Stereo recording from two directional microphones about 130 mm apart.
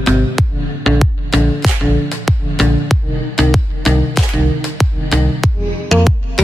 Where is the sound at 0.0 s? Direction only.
Centre (ahead or behind).